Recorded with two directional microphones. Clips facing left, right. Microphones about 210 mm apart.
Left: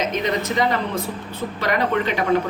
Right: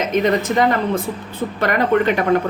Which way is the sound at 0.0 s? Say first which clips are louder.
Right 5 dB; 55° right (ahead or behind).